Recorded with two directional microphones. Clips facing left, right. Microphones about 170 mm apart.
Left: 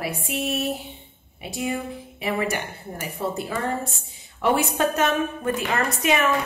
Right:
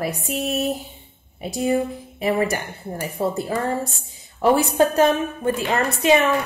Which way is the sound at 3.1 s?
35° right (ahead or behind).